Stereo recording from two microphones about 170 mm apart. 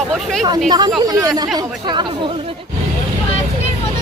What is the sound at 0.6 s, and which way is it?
Speech, 25° right (ahead or behind).